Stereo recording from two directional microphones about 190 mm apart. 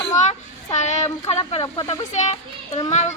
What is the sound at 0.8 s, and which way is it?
A child's voice, 35° left (ahead or behind).